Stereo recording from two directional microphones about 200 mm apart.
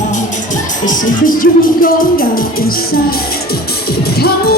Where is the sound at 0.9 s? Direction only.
45° left (ahead or behind).